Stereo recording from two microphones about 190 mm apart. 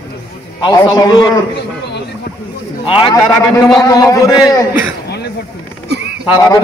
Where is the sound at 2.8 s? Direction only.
30° left (ahead or behind).